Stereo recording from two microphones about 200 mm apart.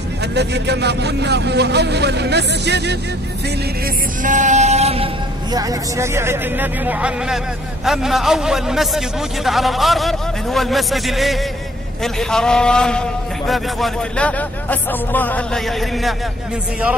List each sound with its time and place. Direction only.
0.3 s speech: 55° right (ahead or behind)
3.8 s a man's voice: 40° right (ahead or behind); by 16.2 s centre (ahead or behind)